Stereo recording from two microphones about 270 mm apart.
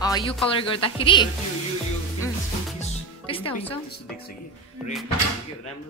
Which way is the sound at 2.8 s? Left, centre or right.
Centre.